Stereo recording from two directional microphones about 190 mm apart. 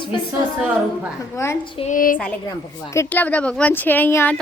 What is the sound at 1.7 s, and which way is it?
Speech, 40° left (ahead or behind).